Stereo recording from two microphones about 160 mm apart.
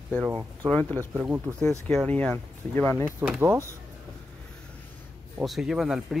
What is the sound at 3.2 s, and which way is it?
Speech, 15° right (ahead or behind).